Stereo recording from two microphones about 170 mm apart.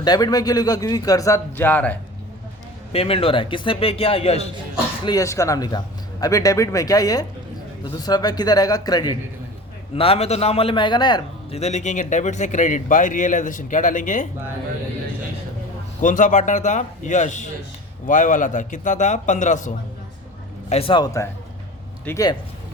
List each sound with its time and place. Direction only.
0.0 s speech: 25° left (ahead or behind)
2.9 s a man's voice: 35° left (ahead or behind)
5.0 s speech: 20° left (ahead or behind)
9.9 s a man's voice: 35° left (ahead or behind)
11.5 s speech: 40° left (ahead or behind)
16.0 s speech: 50° left (ahead or behind)
20.7 s speech: 35° left (ahead or behind); by 22.3 s 15° left (ahead or behind)